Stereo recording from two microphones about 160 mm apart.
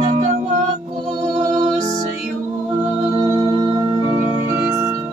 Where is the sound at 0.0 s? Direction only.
40° right (ahead or behind).